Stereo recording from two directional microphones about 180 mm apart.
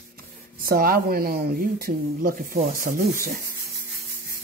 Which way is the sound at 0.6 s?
55° right (ahead or behind).